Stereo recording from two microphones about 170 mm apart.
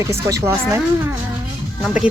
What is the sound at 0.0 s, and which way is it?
A woman's voice, 20° right (ahead or behind).